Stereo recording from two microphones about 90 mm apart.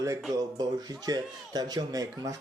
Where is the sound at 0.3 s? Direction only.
45° right (ahead or behind).